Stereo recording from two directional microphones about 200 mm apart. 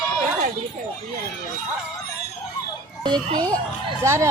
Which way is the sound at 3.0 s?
20° right (ahead or behind).